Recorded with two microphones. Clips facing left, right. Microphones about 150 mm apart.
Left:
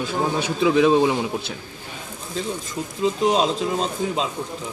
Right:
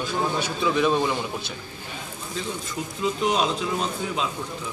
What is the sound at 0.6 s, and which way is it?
Speech, 90° left.